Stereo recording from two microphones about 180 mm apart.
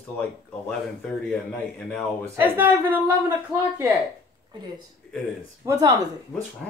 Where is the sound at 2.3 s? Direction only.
15° right (ahead or behind).